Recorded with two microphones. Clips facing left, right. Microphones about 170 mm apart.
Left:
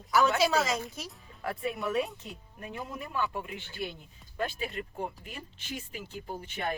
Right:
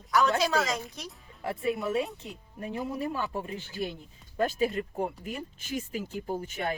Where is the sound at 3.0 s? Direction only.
35° right (ahead or behind).